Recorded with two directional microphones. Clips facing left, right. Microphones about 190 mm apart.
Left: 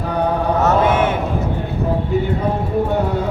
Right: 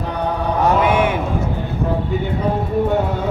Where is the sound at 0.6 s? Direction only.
10° right (ahead or behind).